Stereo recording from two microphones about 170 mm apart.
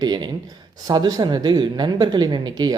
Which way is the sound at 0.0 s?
25° right (ahead or behind).